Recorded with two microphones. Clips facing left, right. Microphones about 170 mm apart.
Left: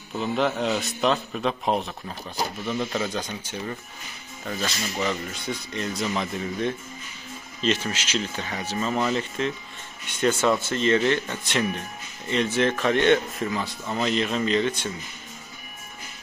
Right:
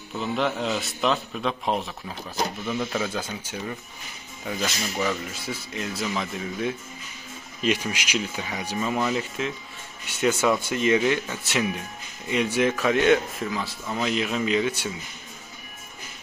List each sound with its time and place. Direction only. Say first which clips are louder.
0.2 s speech: left 2 dB; centre (ahead or behind)